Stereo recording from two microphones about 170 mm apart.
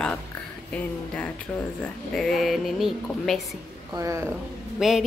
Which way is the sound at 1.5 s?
10° left (ahead or behind).